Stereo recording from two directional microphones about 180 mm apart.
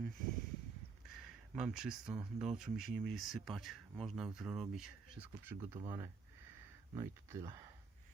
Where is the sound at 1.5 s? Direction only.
5° right (ahead or behind).